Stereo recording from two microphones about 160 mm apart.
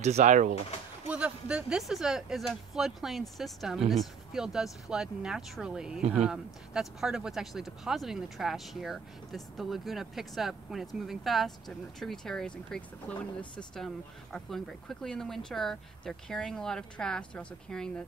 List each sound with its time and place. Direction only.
0.0 s speech: 45° right (ahead or behind)
1.0 s speech: 5° right (ahead or behind)